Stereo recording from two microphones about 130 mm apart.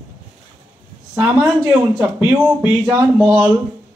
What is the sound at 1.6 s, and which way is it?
Speech, 20° right (ahead or behind).